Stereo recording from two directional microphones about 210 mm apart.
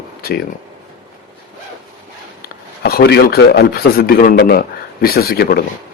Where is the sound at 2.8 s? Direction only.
45° left (ahead or behind).